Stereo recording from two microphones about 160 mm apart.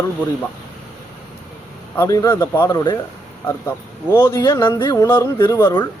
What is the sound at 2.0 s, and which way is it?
Speech, 15° left (ahead or behind).